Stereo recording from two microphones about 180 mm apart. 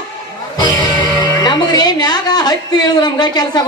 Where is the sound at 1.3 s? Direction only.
20° left (ahead or behind).